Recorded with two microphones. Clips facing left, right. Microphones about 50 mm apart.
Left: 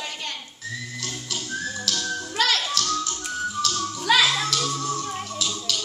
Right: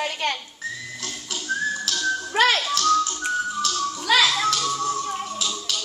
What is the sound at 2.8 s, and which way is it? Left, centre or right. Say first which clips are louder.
Tap: right 7 dB; centre.